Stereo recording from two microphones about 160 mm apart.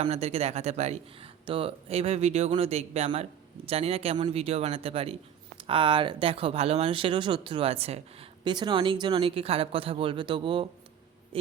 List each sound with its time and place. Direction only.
0.0 s speech: 40° right (ahead or behind)